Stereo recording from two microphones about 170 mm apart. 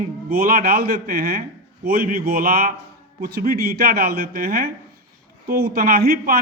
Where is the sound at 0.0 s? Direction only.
65° right (ahead or behind).